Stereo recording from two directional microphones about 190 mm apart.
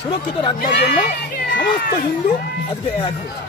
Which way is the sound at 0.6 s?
60° left (ahead or behind).